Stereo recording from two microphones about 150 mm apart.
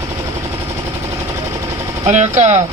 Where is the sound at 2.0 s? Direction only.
55° right (ahead or behind).